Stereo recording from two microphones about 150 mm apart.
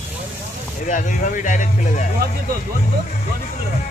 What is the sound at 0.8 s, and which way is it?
Speech, 60° left (ahead or behind).